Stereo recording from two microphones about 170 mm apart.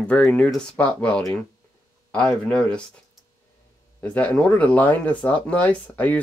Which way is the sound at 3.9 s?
10° left (ahead or behind).